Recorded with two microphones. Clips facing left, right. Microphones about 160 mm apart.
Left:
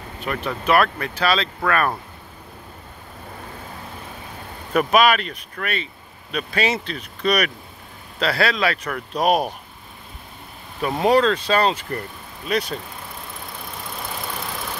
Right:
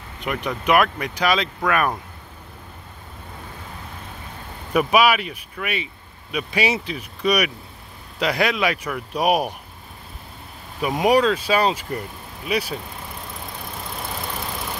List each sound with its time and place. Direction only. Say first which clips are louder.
0.2 s speech: even; 15° right (ahead or behind)
4.7 s speech: left 1 dB; 10° right (ahead or behind)
10.8 s speech: even; 15° right (ahead or behind)